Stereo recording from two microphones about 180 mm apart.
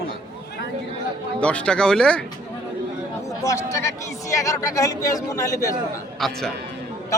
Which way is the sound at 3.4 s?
15° left (ahead or behind).